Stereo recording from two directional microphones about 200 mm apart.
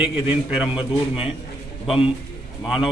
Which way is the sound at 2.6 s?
5° right (ahead or behind).